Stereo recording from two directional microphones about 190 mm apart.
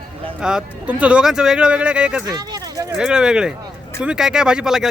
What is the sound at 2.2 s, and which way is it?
Speech, 20° right (ahead or behind).